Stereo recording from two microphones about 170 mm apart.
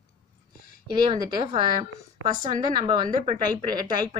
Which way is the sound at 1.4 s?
35° right (ahead or behind).